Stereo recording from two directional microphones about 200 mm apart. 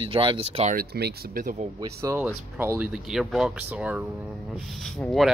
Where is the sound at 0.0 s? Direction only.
25° right (ahead or behind).